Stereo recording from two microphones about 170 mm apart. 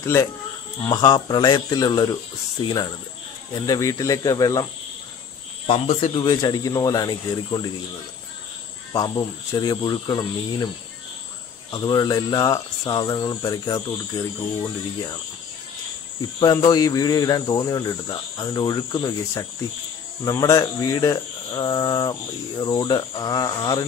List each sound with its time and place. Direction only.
0.0 s speech: 15° left (ahead or behind)
5.7 s speech: 30° left (ahead or behind)
8.9 s speech: 20° left (ahead or behind)
11.7 s speech: 25° left (ahead or behind)
16.2 s speech: 25° left (ahead or behind)